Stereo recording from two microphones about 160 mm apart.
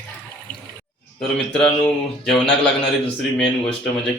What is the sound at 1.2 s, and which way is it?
Speech, 5° left (ahead or behind).